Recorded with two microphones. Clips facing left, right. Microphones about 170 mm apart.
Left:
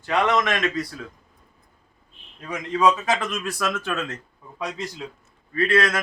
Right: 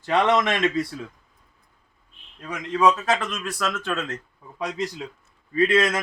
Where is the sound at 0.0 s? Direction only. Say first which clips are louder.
Right 1 dB; 30° right (ahead or behind).